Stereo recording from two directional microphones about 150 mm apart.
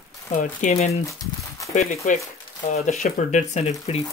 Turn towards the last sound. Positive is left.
turn(degrees=50)  # may be behind; listen again after turning